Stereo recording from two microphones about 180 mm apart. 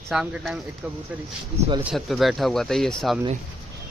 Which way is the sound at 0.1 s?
5° right (ahead or behind).